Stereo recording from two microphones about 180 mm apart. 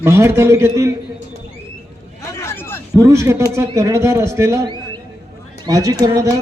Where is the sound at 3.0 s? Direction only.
15° right (ahead or behind).